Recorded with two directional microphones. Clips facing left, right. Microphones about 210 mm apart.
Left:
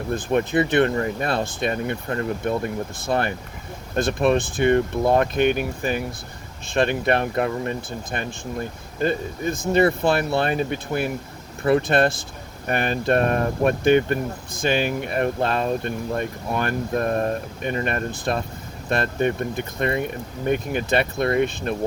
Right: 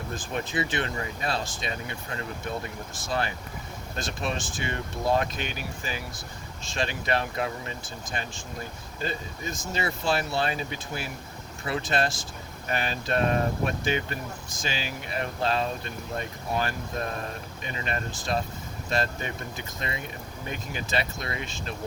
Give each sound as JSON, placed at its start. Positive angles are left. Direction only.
{"t": 0.1, "sound": "speech", "side_deg": 60}